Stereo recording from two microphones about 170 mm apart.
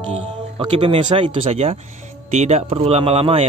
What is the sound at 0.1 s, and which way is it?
Speech, 35° right (ahead or behind).